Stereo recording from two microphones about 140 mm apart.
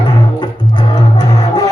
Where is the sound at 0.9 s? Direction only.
30° left (ahead or behind).